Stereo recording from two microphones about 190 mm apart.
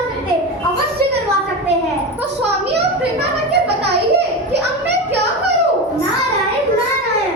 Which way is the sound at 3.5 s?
60° right (ahead or behind).